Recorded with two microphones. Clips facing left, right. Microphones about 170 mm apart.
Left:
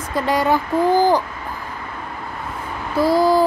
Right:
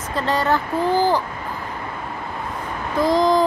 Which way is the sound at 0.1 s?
10° left (ahead or behind).